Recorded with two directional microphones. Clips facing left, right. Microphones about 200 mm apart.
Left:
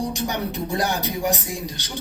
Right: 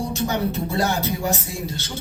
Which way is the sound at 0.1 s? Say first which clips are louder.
Right 3 dB; 15° left (ahead or behind).